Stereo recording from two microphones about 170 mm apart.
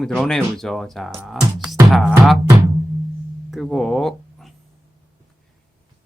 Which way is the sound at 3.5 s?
Centre (ahead or behind).